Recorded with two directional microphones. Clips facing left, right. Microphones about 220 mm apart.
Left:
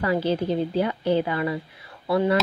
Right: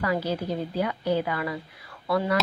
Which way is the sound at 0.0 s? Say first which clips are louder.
Left 4 dB; 25° left (ahead or behind).